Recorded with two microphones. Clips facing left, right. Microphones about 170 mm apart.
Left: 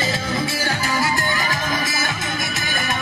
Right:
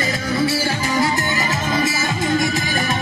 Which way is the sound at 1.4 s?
25° right (ahead or behind).